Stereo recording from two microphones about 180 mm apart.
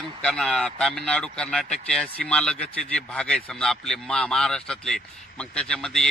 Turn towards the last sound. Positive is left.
turn(degrees=5)  # may be behind; listen again after turning